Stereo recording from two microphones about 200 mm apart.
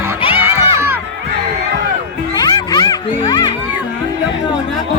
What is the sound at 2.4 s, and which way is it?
Music, 20° left (ahead or behind).